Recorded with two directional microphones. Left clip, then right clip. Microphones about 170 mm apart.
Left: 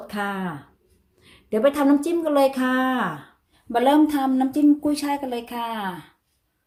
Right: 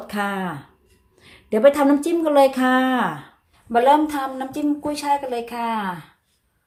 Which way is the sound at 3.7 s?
35° left (ahead or behind).